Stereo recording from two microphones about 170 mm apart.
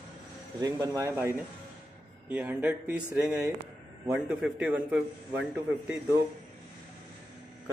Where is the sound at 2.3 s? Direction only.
10° right (ahead or behind).